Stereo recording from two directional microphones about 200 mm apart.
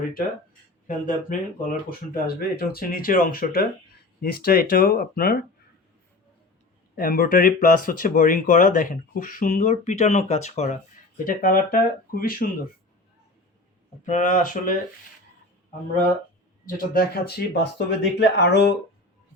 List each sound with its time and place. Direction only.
0.9 s speech: 40° left (ahead or behind)
6.9 s speech: 45° left (ahead or behind)
11.3 s speech: 45° left (ahead or behind)
14.0 s speech: 40° left (ahead or behind)
16.9 s speech: 50° left (ahead or behind)